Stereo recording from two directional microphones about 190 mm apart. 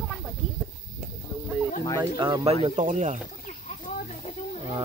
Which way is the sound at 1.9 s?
25° right (ahead or behind).